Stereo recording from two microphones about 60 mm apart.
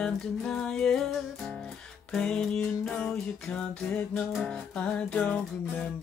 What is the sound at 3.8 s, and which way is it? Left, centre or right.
Music, left.